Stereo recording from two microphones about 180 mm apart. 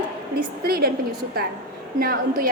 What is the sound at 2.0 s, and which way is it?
Speech, 55° right (ahead or behind).